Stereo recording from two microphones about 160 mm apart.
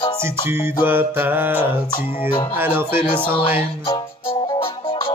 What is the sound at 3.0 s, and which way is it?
Music, 35° left (ahead or behind).